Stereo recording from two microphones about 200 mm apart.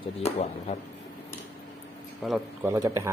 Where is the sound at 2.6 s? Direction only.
15° right (ahead or behind).